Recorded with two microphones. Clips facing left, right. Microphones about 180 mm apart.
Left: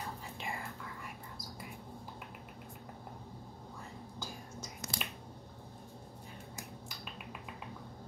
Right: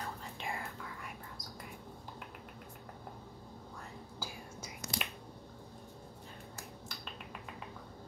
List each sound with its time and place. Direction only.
0.4 s whispering: centre (ahead or behind)
4.2 s whispering: 5° right (ahead or behind)